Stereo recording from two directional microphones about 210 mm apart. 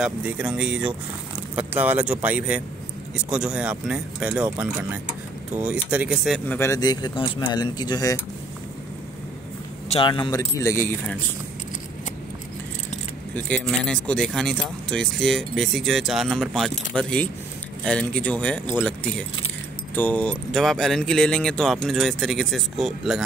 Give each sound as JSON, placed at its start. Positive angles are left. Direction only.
{"t": 0.0, "sound": "speech", "side_deg": -5}
{"t": 5.5, "sound": "speech", "side_deg": -5}
{"t": 6.6, "sound": "speech", "side_deg": 15}
{"t": 9.8, "sound": "speech", "side_deg": 25}
{"t": 13.3, "sound": "speech", "side_deg": 5}